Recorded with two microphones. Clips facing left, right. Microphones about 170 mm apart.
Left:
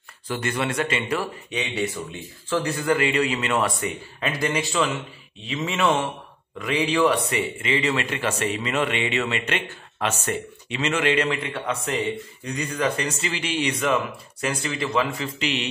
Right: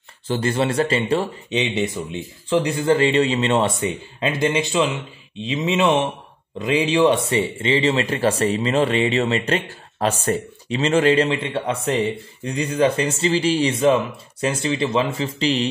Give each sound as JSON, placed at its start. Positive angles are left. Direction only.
{"t": 0.3, "sound": "speech", "side_deg": -30}